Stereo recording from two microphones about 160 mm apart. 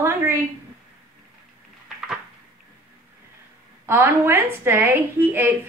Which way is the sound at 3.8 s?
15° right (ahead or behind).